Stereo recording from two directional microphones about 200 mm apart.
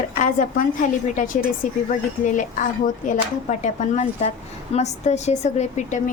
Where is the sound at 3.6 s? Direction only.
35° left (ahead or behind).